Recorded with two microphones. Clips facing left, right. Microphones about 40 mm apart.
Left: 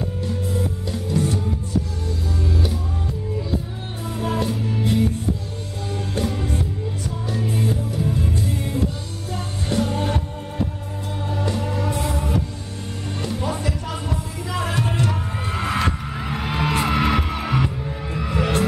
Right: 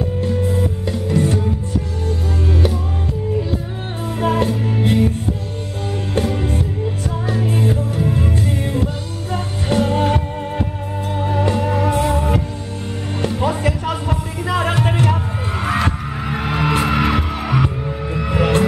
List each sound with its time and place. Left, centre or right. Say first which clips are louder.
1.1 s music: right 4 dB; right
4.2 s music: right 6 dB; right
4.5 s music: right 4 dB; right
7.3 s music: right 4 dB; right
9.3 s music: right 5 dB; right
13.5 s music: right 6 dB; right
15.5 s music: right 3 dB; centre
18.1 s music: right 5 dB; right